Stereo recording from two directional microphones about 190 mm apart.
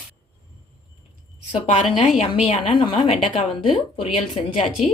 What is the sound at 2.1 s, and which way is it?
A woman's voice, 30° left (ahead or behind).